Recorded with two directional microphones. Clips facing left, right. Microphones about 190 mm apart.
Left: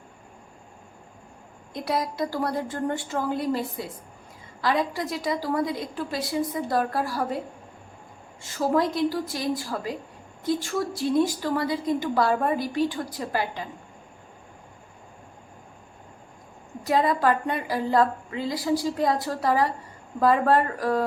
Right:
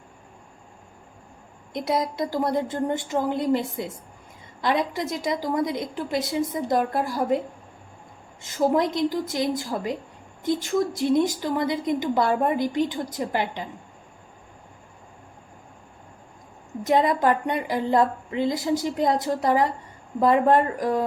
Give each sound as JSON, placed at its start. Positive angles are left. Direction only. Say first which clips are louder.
{"t": 1.7, "sound": "a woman's voice", "louder": "right 3 dB", "side_deg": -20}
{"t": 8.4, "sound": "a woman's voice", "louder": "right 2 dB", "side_deg": -20}
{"t": 16.8, "sound": "a woman's voice", "louder": "right 2 dB", "side_deg": -20}